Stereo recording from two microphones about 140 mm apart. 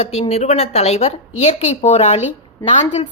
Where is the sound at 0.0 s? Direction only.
50° left (ahead or behind).